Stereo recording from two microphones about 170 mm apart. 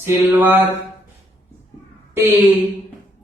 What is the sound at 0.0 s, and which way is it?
Speech, 10° right (ahead or behind).